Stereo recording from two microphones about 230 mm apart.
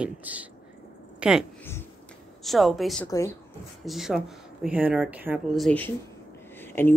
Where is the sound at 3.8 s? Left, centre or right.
Centre.